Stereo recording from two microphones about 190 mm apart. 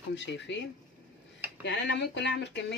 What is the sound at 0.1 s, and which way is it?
Speech, 65° left (ahead or behind).